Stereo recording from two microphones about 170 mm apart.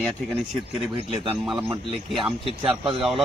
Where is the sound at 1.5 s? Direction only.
Centre (ahead or behind).